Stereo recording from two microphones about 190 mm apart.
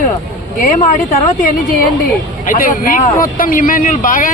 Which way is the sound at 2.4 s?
50° left (ahead or behind).